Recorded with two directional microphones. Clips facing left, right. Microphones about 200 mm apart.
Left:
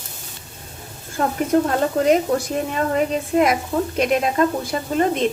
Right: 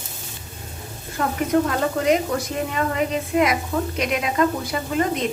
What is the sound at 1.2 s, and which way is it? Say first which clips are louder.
A woman's voice: left 2 dB; 35° left (ahead or behind).